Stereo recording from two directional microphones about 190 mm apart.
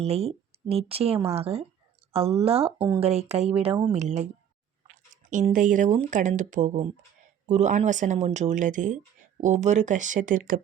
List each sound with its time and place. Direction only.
0.0 s speech: 30° right (ahead or behind)